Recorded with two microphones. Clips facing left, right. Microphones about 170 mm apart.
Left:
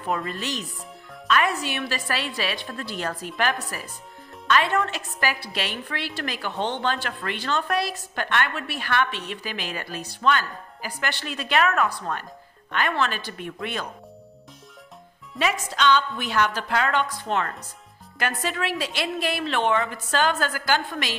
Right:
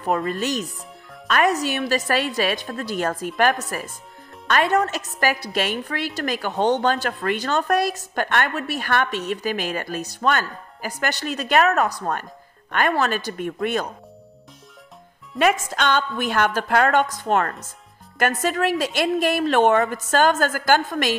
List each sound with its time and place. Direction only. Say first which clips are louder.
0.1 s a woman's voice: right 6 dB; 45° right (ahead or behind)
15.3 s a woman's voice: right 6 dB; 50° right (ahead or behind)